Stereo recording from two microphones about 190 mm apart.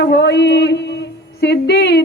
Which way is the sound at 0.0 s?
60° left (ahead or behind).